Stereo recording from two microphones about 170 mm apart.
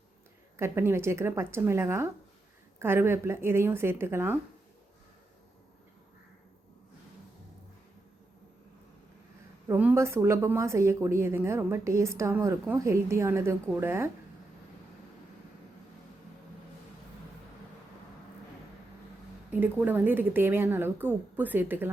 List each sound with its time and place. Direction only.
0.5 s a woman's voice: 15° right (ahead or behind)
9.6 s a woman's voice: 15° right (ahead or behind)
19.5 s a woman's voice: 10° right (ahead or behind)